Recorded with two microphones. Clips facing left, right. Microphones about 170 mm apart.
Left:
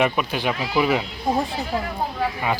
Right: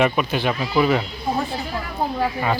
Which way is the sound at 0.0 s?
5° left (ahead or behind).